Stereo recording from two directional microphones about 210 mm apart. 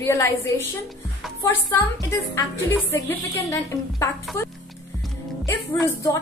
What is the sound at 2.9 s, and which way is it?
A woman's voice, 15° left (ahead or behind).